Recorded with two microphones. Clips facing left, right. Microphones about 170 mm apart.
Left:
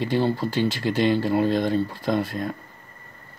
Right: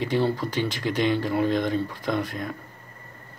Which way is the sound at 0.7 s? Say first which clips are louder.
Left 3 dB; 5° left (ahead or behind).